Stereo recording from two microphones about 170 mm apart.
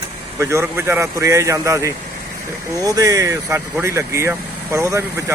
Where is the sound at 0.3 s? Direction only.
15° right (ahead or behind).